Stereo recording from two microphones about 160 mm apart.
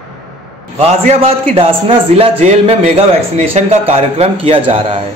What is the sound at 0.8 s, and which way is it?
Speech, 40° right (ahead or behind).